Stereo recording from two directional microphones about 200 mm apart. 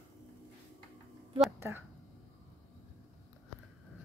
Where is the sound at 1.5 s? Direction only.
10° right (ahead or behind).